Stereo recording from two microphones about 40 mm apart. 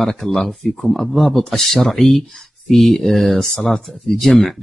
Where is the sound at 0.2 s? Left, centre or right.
Centre.